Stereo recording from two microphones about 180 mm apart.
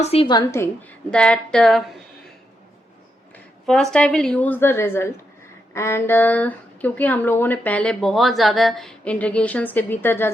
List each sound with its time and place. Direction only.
0.0 s speech: 30° left (ahead or behind); by 1.8 s centre (ahead or behind)
3.3 s speech: centre (ahead or behind)